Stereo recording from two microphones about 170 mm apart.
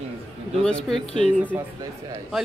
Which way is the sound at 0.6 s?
5° left (ahead or behind).